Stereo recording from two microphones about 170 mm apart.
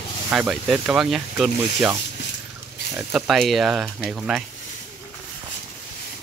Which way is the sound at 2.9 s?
Centre (ahead or behind).